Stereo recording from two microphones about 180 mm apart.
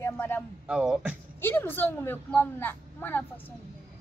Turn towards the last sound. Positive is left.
turn(degrees=10)  # may be behind; listen again after turning